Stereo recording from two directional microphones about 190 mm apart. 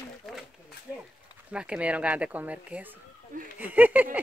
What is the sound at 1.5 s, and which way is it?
Speech, 5° right (ahead or behind).